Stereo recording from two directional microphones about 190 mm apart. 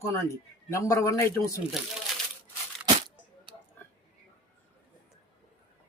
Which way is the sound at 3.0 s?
25° right (ahead or behind).